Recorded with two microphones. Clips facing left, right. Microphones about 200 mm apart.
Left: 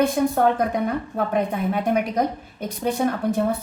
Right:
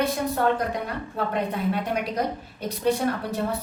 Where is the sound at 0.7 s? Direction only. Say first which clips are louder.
Left 6 dB; 50° left (ahead or behind).